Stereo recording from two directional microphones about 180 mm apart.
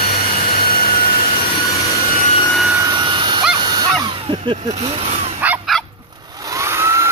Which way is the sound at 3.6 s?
20° right (ahead or behind).